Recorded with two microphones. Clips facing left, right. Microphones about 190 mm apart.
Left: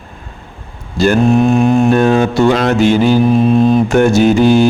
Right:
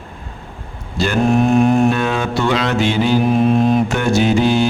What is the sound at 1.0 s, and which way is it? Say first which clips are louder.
Speech: left 8 dB; 45° left (ahead or behind).